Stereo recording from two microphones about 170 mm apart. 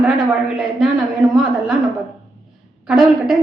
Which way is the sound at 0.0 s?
5° right (ahead or behind).